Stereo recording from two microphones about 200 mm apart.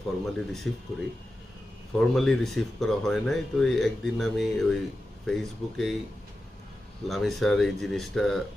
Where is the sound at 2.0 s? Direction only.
Centre (ahead or behind).